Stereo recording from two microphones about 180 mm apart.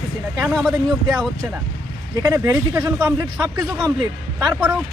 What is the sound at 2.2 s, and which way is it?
Speech, 15° right (ahead or behind).